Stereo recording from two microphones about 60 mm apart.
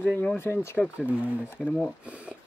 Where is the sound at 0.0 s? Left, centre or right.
Left.